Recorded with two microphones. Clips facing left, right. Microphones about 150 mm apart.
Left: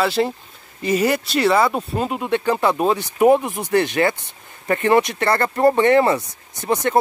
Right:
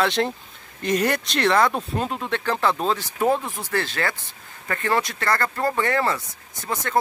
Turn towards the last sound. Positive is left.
turn(degrees=20)  # may be behind; listen again after turning